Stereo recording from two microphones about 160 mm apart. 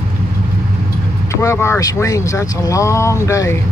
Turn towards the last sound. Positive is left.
turn(degrees=20)  # may be behind; listen again after turning